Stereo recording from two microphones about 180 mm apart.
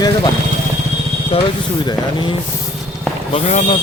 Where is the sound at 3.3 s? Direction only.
35° left (ahead or behind).